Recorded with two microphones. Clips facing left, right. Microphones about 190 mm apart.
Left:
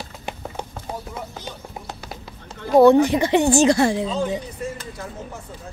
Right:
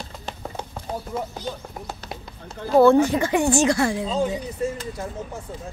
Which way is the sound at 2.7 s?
20° left (ahead or behind).